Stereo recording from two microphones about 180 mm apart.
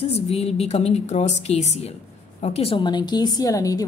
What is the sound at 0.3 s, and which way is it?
A woman's voice, 35° left (ahead or behind).